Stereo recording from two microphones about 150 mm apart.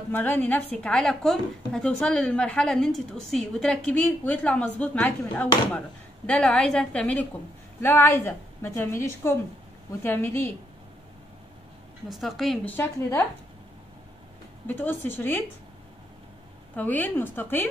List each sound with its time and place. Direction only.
0.1 s a woman's voice: 10° left (ahead or behind)
12.1 s a woman's voice: centre (ahead or behind)
12.6 s a woman's voice: 15° left (ahead or behind)
14.7 s a woman's voice: 15° left (ahead or behind)
16.7 s a woman's voice: 10° left (ahead or behind)